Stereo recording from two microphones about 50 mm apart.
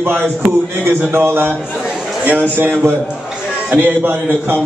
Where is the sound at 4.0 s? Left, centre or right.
Right.